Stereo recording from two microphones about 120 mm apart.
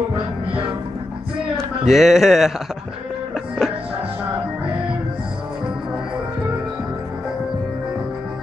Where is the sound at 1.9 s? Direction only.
5° right (ahead or behind).